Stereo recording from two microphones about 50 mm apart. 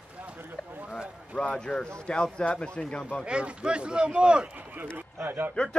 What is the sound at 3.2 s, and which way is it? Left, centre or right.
Speech, centre.